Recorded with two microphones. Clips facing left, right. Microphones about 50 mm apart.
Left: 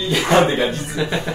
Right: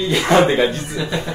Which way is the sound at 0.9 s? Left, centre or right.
Left.